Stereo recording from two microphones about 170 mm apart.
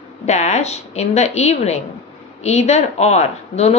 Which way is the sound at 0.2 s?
40° left (ahead or behind).